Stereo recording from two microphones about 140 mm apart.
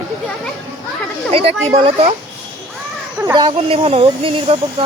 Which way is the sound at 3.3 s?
35° right (ahead or behind).